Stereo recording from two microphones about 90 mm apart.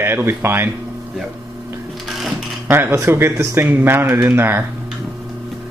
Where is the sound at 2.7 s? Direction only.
25° right (ahead or behind).